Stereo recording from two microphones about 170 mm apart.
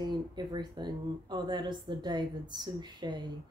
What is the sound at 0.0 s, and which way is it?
Speech, 25° right (ahead or behind).